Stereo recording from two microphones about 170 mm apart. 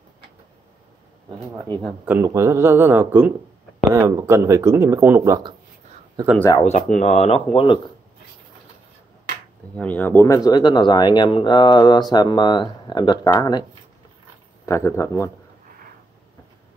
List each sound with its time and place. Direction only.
2.0 s speech: 15° right (ahead or behind)
6.6 s speech: 40° left (ahead or behind)
9.8 s speech: 10° left (ahead or behind)
14.7 s speech: 15° left (ahead or behind)